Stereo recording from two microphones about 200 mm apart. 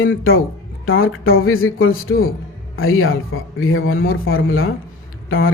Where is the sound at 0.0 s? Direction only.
80° left.